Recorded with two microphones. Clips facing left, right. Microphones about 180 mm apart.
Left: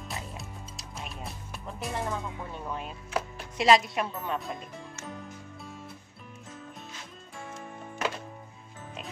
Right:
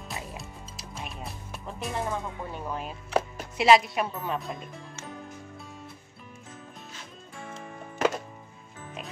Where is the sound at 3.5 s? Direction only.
5° right (ahead or behind).